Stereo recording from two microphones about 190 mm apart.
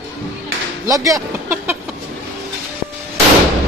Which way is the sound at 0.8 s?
15° right (ahead or behind).